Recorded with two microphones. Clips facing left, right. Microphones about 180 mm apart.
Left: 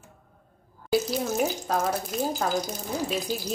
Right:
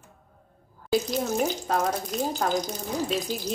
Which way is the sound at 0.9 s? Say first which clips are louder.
Even; 5° left (ahead or behind).